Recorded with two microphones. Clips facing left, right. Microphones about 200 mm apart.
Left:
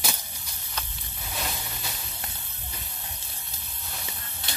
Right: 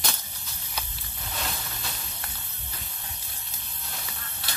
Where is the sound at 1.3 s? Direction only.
10° left (ahead or behind).